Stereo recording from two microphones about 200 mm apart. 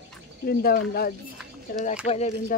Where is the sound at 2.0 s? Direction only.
30° left (ahead or behind).